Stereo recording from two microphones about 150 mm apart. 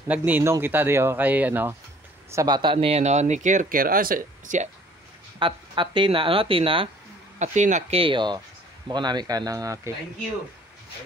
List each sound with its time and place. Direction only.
0.1 s speech: 10° right (ahead or behind)
2.3 s speech: 25° right (ahead or behind); by 4.6 s 60° right (ahead or behind)
5.4 s speech: 35° right (ahead or behind)
7.3 s speech: 50° right (ahead or behind)
8.0 s speech: 30° right (ahead or behind)